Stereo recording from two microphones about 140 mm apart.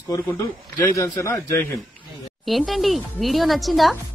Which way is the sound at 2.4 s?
Centre (ahead or behind).